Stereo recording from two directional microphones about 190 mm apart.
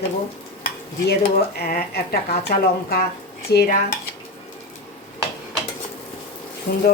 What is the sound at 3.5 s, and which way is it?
Speech, 60° left (ahead or behind).